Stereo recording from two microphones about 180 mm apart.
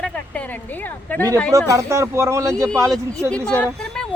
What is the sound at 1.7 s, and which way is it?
Speech, 15° right (ahead or behind).